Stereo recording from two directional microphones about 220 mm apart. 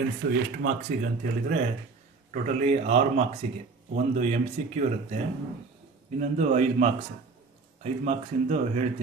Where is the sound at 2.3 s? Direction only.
35° right (ahead or behind).